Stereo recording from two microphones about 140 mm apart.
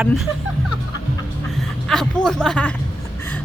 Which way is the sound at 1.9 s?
5° left (ahead or behind).